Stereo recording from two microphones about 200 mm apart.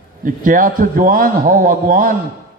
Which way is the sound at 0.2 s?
45° right (ahead or behind).